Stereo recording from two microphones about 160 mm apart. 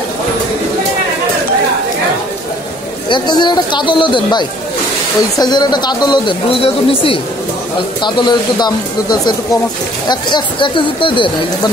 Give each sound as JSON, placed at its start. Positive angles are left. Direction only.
{"t": 3.1, "sound": "speech", "side_deg": 25}